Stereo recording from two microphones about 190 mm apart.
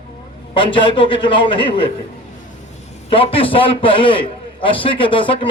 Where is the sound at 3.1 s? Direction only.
30° left (ahead or behind).